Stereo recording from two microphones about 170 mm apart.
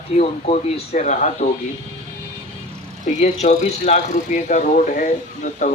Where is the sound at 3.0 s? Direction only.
40° left (ahead or behind).